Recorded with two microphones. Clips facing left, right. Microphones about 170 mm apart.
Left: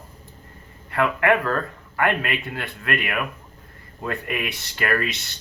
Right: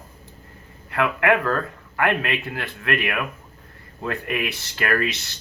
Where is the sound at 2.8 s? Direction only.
25° right (ahead or behind).